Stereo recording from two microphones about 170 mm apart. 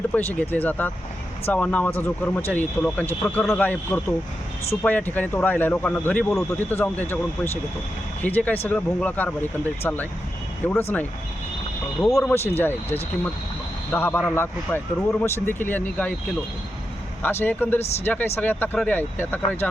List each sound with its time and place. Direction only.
0.1 s speech: 10° left (ahead or behind)
8.2 s speech: 10° left (ahead or behind)
10.7 s speech: 10° left (ahead or behind)
12.3 s speech: 10° left (ahead or behind)
17.2 s speech: 10° left (ahead or behind)